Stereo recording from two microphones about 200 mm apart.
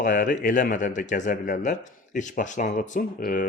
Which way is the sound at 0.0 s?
40° left (ahead or behind).